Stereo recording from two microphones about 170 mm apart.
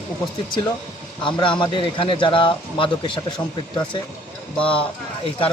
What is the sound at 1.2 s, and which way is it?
Speech, 30° left (ahead or behind).